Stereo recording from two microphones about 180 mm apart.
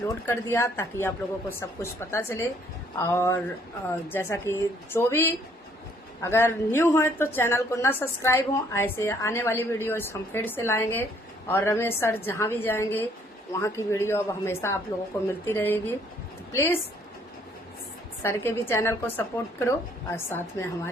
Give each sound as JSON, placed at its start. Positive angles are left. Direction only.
{"t": 0.3, "sound": "a woman's voice", "side_deg": 15}
{"t": 18.2, "sound": "a woman's voice", "side_deg": 15}